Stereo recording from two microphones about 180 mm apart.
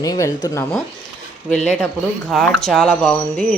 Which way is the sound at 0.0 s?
20° left (ahead or behind).